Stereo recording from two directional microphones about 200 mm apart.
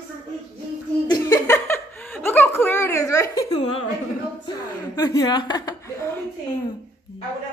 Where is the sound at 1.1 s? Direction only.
10° left (ahead or behind).